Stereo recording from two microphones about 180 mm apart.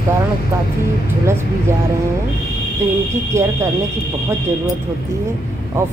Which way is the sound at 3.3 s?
15° right (ahead or behind).